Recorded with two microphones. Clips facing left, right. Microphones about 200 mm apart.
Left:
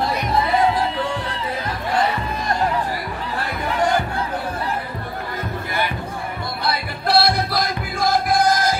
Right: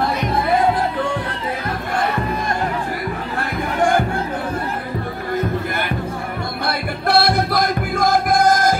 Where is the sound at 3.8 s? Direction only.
50° right (ahead or behind).